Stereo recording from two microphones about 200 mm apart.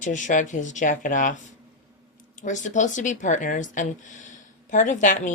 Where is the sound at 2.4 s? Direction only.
40° left (ahead or behind).